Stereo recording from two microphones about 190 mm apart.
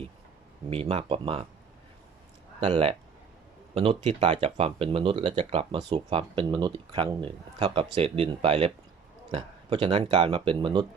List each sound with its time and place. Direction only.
0.7 s speech: 30° right (ahead or behind)
2.6 s speech: 30° right (ahead or behind)